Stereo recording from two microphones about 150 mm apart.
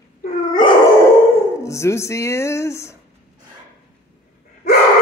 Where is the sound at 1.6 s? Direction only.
20° left (ahead or behind).